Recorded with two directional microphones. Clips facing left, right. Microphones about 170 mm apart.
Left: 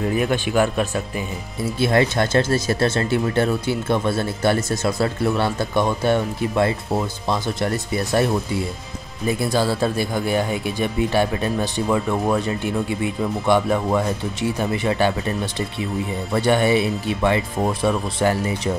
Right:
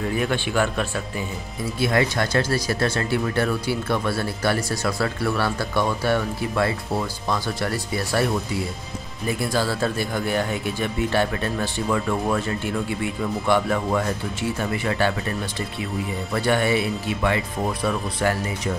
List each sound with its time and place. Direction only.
0.3 s speech: 15° left (ahead or behind)
1.8 s speech: 30° left (ahead or behind)
9.4 s speech: 20° left (ahead or behind)
16.3 s speech: 20° left (ahead or behind)